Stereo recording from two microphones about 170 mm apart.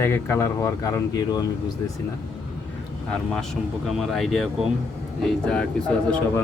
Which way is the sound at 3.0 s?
5° left (ahead or behind).